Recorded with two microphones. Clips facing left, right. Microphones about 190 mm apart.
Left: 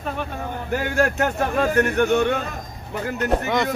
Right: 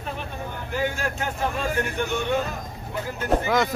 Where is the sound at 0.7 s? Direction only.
60° left (ahead or behind).